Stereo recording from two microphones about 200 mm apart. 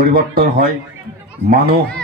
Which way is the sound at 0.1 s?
50° right (ahead or behind).